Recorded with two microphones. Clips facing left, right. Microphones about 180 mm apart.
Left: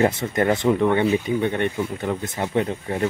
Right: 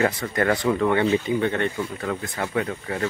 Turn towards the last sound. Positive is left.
turn(degrees=25)  # may be behind; listen again after turning